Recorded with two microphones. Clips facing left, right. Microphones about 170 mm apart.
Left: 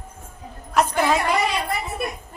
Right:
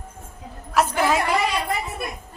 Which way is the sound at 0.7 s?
5° right (ahead or behind).